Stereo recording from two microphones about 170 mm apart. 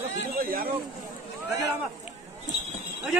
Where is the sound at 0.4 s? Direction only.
60° right (ahead or behind).